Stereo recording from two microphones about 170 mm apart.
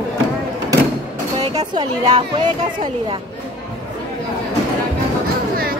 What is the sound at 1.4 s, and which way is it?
Speech, 25° right (ahead or behind).